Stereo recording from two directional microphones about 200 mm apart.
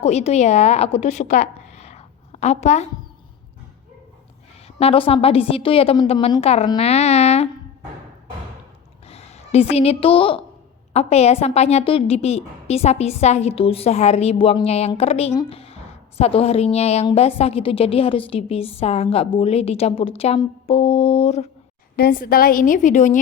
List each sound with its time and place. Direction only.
0.0 s a woman's voice: 30° left (ahead or behind)
4.8 s a woman's voice: 30° left (ahead or behind)
9.0 s a woman's voice: 30° left (ahead or behind)
21.9 s a woman's voice: 50° left (ahead or behind)